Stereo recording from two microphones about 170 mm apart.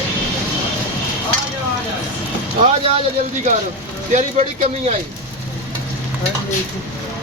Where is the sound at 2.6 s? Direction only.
40° right (ahead or behind).